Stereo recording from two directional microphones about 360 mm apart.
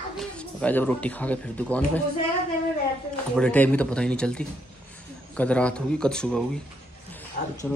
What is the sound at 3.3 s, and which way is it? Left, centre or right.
Speech, centre.